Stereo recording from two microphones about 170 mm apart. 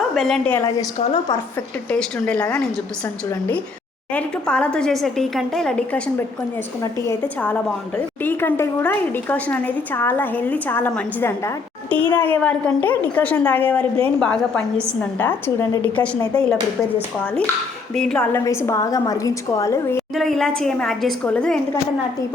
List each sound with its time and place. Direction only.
0.1 s a woman's voice: centre (ahead or behind)
0.5 s a woman's voice: 15° left (ahead or behind)
1.9 s a woman's voice: 5° left (ahead or behind)
4.1 s a woman's voice: 5° left (ahead or behind)
20.1 s a woman's voice: centre (ahead or behind)